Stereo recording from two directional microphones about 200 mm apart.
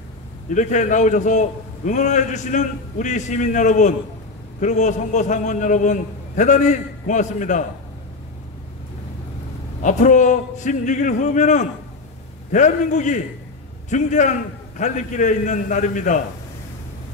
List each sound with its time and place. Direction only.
0.6 s a man's voice: 35° left (ahead or behind)
9.8 s a man's voice: 40° left (ahead or behind)